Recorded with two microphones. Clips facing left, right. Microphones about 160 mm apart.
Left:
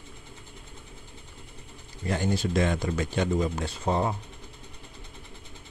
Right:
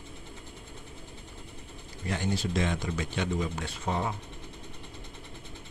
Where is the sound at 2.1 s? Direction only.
45° left (ahead or behind).